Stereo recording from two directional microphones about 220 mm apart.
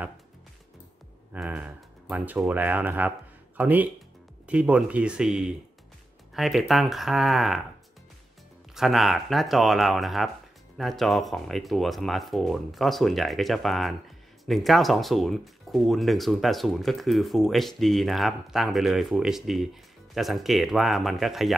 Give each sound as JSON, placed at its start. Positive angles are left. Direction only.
{"t": 1.3, "sound": "speech", "side_deg": -5}
{"t": 8.7, "sound": "speech", "side_deg": 0}